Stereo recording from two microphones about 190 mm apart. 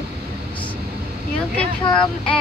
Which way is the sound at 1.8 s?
25° left (ahead or behind).